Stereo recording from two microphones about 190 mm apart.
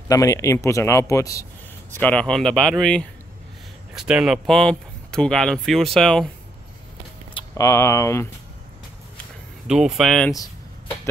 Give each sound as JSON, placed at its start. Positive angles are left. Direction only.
{"t": 0.1, "sound": "speech", "side_deg": 15}
{"t": 7.3, "sound": "speech", "side_deg": 15}
{"t": 9.7, "sound": "speech", "side_deg": -5}